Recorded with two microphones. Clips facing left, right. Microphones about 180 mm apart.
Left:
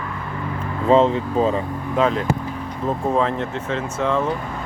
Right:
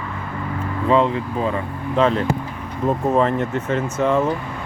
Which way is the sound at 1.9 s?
5° left (ahead or behind).